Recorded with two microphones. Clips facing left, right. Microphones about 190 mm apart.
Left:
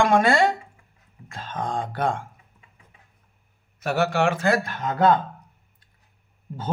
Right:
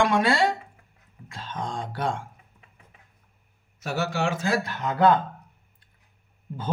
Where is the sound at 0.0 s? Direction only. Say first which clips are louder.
Left 3 dB; 50° left (ahead or behind).